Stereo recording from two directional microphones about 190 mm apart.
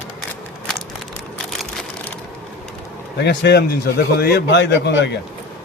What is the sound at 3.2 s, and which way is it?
A man's voice, 65° left (ahead or behind).